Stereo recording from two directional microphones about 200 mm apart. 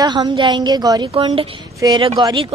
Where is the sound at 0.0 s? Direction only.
20° right (ahead or behind).